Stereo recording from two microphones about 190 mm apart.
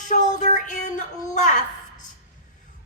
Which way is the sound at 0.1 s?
40° left (ahead or behind).